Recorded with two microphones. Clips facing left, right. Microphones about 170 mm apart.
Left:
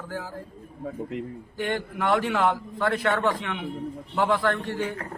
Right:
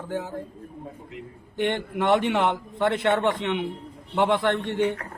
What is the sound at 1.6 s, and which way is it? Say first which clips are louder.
A man's voice: right 3 dB; 25° right (ahead or behind).